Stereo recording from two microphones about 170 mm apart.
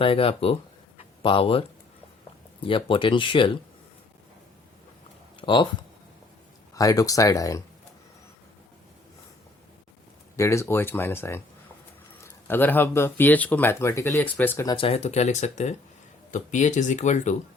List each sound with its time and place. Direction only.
0.0 s speech: 35° left (ahead or behind)
0.9 s a sound: 30° left (ahead or behind)
2.6 s speech: 30° left (ahead or behind)
5.4 s a sound: 30° left (ahead or behind)
6.7 s speech: 20° left (ahead or behind)
10.3 s speech: 15° left (ahead or behind)
14.8 s speech: 35° left (ahead or behind)